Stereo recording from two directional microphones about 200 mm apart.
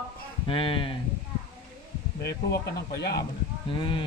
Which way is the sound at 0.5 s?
25° left (ahead or behind).